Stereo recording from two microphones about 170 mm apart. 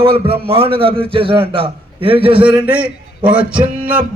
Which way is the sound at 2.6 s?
10° right (ahead or behind).